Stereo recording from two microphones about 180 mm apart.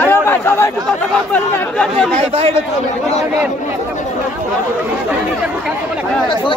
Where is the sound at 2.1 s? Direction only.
30° right (ahead or behind).